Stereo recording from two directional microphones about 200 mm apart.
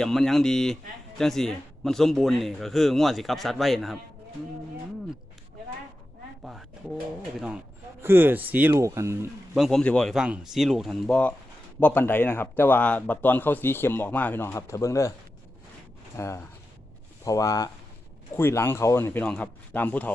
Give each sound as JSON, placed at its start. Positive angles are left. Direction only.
{"t": 0.0, "sound": "speech", "side_deg": 0}
{"t": 6.4, "sound": "a sound", "side_deg": 0}
{"t": 7.3, "sound": "speech", "side_deg": -5}
{"t": 9.6, "sound": "speech", "side_deg": 0}
{"t": 16.1, "sound": "speech", "side_deg": 15}